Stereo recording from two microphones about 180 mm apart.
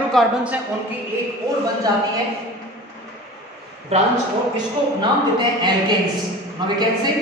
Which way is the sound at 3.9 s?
35° right (ahead or behind).